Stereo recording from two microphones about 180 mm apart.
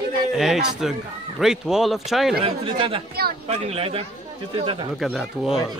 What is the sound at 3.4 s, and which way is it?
Speech, 35° right (ahead or behind).